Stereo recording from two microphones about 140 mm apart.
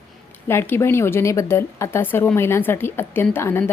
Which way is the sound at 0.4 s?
15° left (ahead or behind).